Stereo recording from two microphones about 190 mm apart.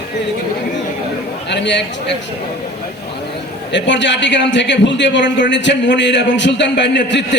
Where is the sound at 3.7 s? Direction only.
70° left (ahead or behind).